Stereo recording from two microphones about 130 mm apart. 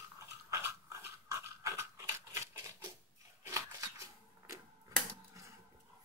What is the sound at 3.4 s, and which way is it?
Scissors, 25° right (ahead or behind).